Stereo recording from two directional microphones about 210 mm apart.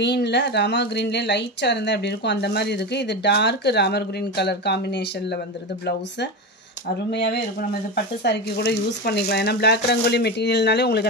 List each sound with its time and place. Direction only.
0.0 s speech: 55° left (ahead or behind)